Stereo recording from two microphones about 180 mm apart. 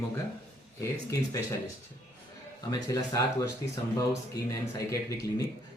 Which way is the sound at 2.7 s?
20° left (ahead or behind).